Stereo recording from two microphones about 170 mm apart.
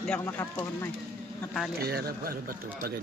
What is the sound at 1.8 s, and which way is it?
Speech, 65° right (ahead or behind).